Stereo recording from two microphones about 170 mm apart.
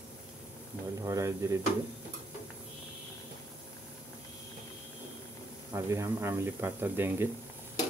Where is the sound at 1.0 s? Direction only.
15° right (ahead or behind).